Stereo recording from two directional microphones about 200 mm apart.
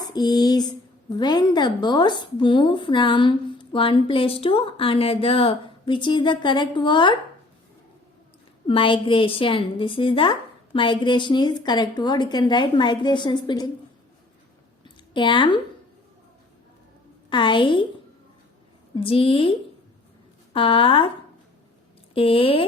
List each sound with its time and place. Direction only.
0.1 s a woman's voice: 20° left (ahead or behind)
8.6 s a woman's voice: 25° left (ahead or behind)
14.8 s a sound: 25° left (ahead or behind)
17.2 s a woman's voice: 25° left (ahead or behind)
18.9 s a woman's voice: 25° left (ahead or behind)
22.1 s a woman's voice: 25° left (ahead or behind)